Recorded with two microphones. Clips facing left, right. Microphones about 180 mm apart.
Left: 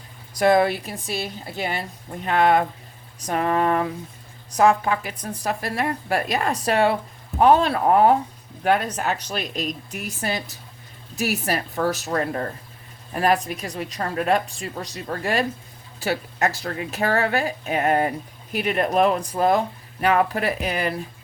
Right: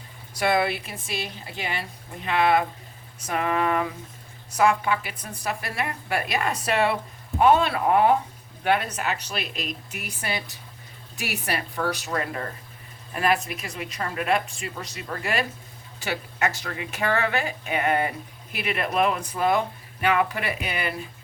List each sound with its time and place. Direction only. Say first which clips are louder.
0.3 s a woman's voice: left 5 dB; 40° left (ahead or behind)